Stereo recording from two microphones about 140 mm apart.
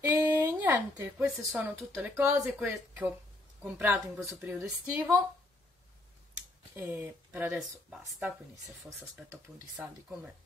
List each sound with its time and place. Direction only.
0.0 s a sound: 20° right (ahead or behind)
1.1 s speech: 5° right (ahead or behind)
2.0 s speech: 15° right (ahead or behind)
6.7 s speech: 15° right (ahead or behind)
9.5 s speech: centre (ahead or behind)